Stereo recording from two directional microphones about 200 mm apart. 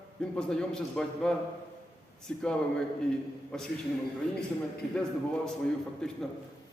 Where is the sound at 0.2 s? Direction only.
5° left (ahead or behind).